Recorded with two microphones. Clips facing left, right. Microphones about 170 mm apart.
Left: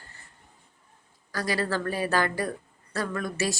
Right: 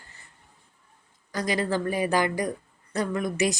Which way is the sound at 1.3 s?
20° right (ahead or behind).